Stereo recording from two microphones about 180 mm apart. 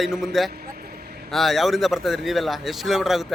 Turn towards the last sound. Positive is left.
turn(degrees=0)  # may be behind; listen again after turning